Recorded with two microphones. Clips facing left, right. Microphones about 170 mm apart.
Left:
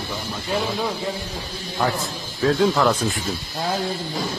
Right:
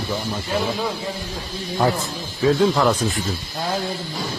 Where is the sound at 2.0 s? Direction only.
Centre (ahead or behind).